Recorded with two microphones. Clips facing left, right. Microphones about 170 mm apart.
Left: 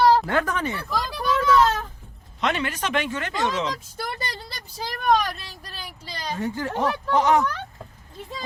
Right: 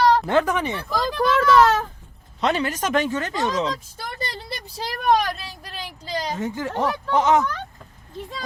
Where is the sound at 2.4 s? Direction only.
35° right (ahead or behind).